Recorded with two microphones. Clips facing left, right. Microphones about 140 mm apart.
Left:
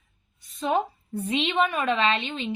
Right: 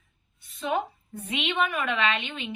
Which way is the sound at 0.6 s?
35° left (ahead or behind).